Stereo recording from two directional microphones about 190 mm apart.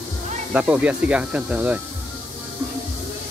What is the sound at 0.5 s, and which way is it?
Speech, 5° right (ahead or behind).